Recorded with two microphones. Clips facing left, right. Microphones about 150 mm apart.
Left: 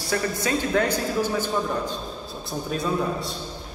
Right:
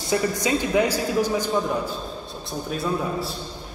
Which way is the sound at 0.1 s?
15° right (ahead or behind).